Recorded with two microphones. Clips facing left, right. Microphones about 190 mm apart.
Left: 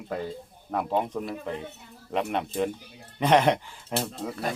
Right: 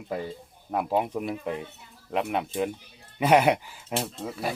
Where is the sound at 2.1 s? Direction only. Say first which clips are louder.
Even; 5° right (ahead or behind).